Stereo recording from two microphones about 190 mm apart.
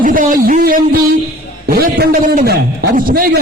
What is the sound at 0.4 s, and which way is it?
A man's voice, 50° right (ahead or behind).